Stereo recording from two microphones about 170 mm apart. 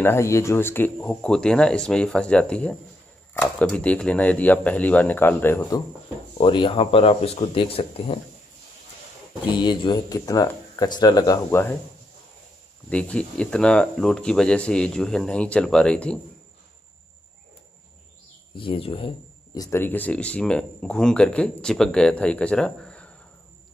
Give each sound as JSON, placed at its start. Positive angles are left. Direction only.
{"t": 0.0, "sound": "speech", "side_deg": 15}
{"t": 6.3, "sound": "speech", "side_deg": 30}
{"t": 9.5, "sound": "speech", "side_deg": 25}
{"t": 12.9, "sound": "speech", "side_deg": 5}
{"t": 18.5, "sound": "speech", "side_deg": 30}
{"t": 19.6, "sound": "speech", "side_deg": 15}